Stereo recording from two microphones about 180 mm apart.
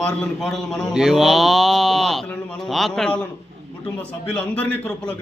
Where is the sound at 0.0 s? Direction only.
5° left (ahead or behind).